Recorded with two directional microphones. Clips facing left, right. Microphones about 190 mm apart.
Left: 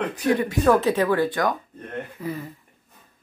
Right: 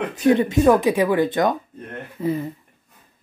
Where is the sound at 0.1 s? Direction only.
25° right (ahead or behind).